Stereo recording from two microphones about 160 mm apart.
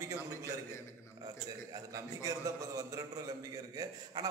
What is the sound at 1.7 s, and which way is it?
A man's voice, 20° right (ahead or behind).